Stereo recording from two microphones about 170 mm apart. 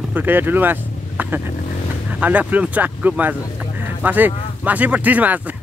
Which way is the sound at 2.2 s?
10° right (ahead or behind).